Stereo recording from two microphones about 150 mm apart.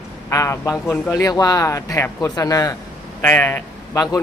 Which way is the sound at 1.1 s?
25° left (ahead or behind).